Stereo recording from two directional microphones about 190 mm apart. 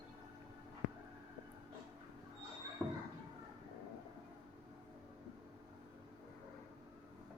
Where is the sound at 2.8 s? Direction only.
10° right (ahead or behind).